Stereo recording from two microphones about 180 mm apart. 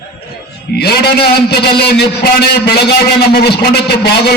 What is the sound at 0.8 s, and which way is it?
A man's voice, 60° left (ahead or behind).